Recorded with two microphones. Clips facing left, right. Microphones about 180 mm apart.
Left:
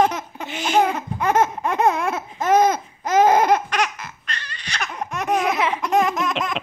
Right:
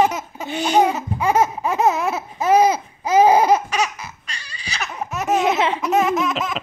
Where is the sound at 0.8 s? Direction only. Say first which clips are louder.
Right 2 dB; 10° right (ahead or behind).